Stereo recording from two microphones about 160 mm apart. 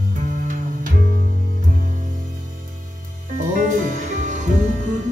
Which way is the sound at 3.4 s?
55° right (ahead or behind).